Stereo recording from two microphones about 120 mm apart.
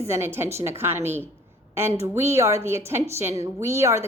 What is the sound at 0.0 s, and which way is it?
A woman's voice, 20° right (ahead or behind).